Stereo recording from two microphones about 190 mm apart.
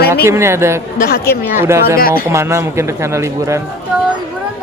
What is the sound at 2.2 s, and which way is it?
A man's voice, 15° right (ahead or behind).